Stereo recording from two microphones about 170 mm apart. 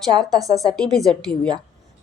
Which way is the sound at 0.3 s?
20° right (ahead or behind).